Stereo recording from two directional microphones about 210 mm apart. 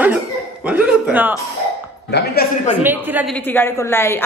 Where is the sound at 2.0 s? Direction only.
50° left (ahead or behind).